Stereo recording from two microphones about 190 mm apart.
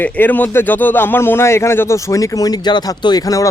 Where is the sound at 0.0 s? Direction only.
10° left (ahead or behind).